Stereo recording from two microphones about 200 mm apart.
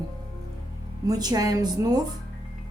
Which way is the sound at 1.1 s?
20° right (ahead or behind).